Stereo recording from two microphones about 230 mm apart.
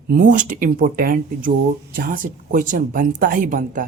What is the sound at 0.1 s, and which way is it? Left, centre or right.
Speech, right.